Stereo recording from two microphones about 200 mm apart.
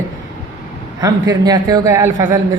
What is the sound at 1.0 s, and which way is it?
Speech, 20° right (ahead or behind).